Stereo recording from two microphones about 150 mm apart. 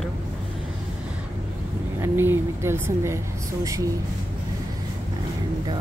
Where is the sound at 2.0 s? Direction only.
15° right (ahead or behind).